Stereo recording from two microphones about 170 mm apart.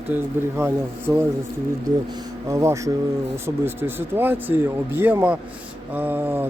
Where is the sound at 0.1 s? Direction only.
15° right (ahead or behind).